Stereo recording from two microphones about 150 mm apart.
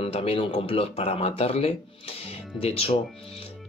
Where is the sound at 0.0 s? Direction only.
40° left (ahead or behind).